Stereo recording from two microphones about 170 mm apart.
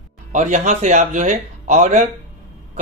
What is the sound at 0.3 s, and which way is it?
Speech, 45° right (ahead or behind).